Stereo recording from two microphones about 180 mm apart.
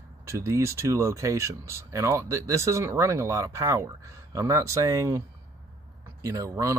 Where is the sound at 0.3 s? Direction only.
15° right (ahead or behind).